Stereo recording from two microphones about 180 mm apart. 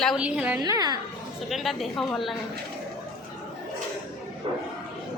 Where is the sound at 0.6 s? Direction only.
20° right (ahead or behind).